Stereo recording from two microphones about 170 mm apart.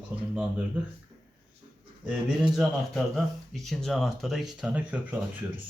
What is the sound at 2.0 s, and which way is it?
Speech, 5° right (ahead or behind).